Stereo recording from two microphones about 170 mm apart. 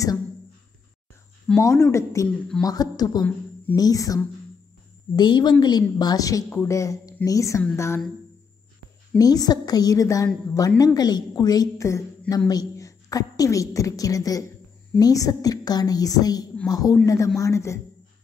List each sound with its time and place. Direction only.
1.6 s a woman's voice: 20° left (ahead or behind)
9.2 s a woman's voice: 20° left (ahead or behind)